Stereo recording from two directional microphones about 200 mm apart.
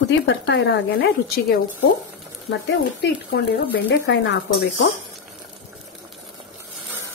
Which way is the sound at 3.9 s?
65° left (ahead or behind).